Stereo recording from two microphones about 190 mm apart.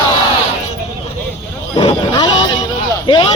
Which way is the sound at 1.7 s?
25° left (ahead or behind).